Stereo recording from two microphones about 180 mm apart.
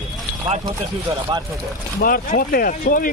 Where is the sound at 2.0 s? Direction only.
50° left (ahead or behind).